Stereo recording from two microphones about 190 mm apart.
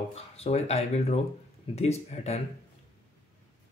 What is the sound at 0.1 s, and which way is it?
Speech, 35° left (ahead or behind).